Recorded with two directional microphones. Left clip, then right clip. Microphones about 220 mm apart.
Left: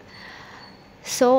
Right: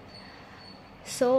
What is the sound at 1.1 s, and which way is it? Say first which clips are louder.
Speech: left 7 dB; 35° left (ahead or behind).